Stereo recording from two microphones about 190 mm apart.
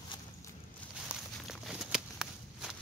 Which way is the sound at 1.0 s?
Centre (ahead or behind).